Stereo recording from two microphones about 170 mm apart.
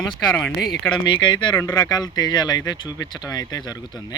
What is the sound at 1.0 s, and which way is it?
Speech, 25° left (ahead or behind).